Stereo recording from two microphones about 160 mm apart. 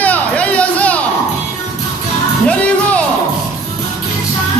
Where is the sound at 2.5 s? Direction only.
10° left (ahead or behind).